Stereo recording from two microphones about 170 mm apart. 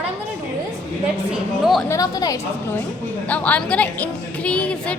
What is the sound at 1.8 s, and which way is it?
Speech, 20° left (ahead or behind).